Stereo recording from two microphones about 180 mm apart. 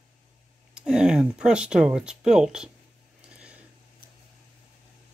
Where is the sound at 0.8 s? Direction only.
5° right (ahead or behind).